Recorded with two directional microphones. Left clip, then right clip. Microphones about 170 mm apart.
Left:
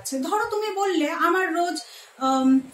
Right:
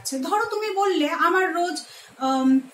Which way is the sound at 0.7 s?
15° left (ahead or behind).